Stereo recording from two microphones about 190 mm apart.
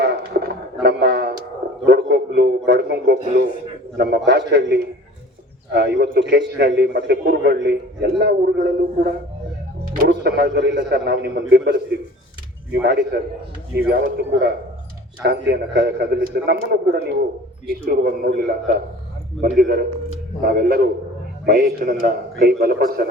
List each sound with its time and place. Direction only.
0.0 s music: 60° right (ahead or behind)
1.9 s a man's voice: 60° right (ahead or behind)
12.8 s a man's voice: 60° right (ahead or behind)